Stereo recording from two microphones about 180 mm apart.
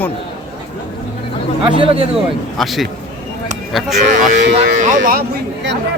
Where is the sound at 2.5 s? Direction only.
Centre (ahead or behind).